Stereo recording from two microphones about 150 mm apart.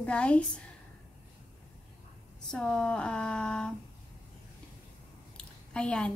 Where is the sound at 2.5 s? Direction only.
5° left (ahead or behind).